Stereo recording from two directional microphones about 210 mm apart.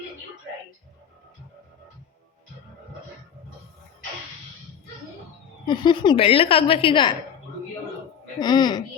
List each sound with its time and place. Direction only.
5.6 s a woman's voice: 20° left (ahead or behind)
8.4 s a woman's voice: 20° left (ahead or behind)